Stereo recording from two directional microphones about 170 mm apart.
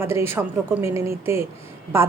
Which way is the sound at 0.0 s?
15° right (ahead or behind).